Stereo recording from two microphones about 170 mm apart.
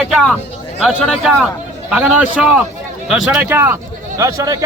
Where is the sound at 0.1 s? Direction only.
5° left (ahead or behind).